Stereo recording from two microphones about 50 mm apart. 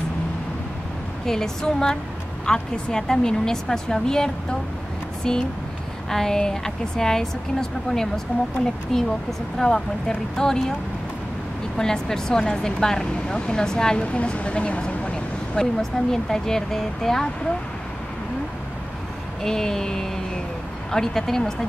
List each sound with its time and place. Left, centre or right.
1.2 s speech: centre
8.9 s speech: centre
11.7 s speech: centre
14.0 s speech: left; by 17.3 s centre
19.4 s speech: centre